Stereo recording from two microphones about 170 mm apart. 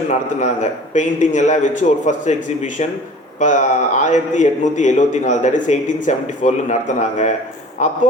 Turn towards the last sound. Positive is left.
turn(degrees=45)  # may be behind; listen again after turning